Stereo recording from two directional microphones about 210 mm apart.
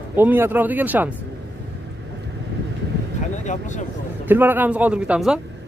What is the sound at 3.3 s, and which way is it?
Speech, 35° left (ahead or behind).